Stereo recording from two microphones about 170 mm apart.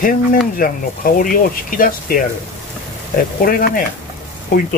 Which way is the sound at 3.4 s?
55° left (ahead or behind).